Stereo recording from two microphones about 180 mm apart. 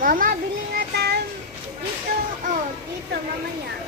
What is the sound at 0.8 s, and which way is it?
Child singing, 60° right (ahead or behind).